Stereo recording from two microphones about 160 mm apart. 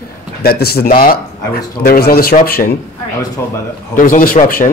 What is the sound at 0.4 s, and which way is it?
A man's voice, 75° left (ahead or behind).